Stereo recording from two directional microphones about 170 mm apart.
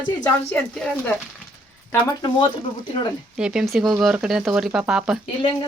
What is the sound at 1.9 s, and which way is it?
Speech, 20° left (ahead or behind).